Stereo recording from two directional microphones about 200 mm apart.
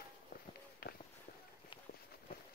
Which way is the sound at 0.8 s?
50° left (ahead or behind).